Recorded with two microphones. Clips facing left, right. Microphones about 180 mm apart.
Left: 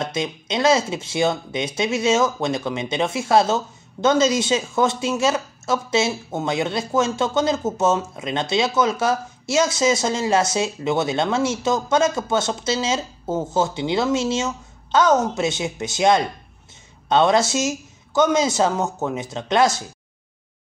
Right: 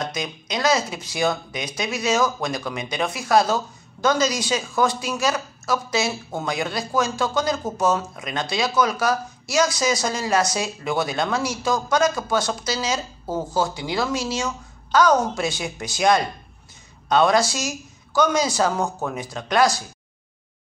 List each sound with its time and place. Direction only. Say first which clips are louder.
0.0 s speech: left 3 dB; 25° left (ahead or behind)